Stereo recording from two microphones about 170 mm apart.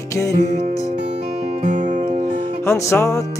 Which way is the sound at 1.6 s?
45° right (ahead or behind).